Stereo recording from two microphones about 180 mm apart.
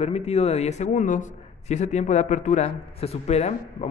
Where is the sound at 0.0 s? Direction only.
35° left (ahead or behind).